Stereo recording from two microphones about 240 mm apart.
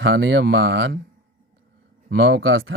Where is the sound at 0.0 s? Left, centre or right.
Right.